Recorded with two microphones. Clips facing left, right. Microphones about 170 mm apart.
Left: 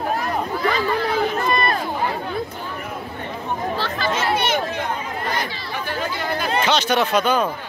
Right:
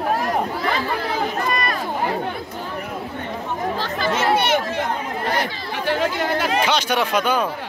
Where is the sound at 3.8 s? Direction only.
45° right (ahead or behind).